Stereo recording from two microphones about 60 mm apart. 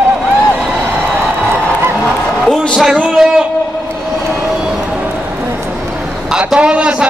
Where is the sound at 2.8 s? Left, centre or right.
Centre.